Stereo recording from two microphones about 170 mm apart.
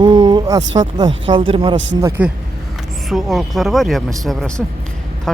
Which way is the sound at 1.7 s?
90° right.